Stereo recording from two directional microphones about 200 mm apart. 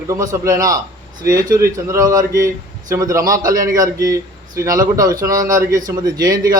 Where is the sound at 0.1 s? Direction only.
15° right (ahead or behind).